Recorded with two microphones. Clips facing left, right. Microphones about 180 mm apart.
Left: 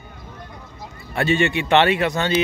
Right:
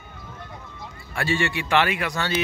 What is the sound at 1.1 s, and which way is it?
Speech, 20° left (ahead or behind).